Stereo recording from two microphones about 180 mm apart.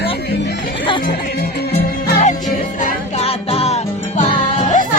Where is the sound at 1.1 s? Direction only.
65° left (ahead or behind).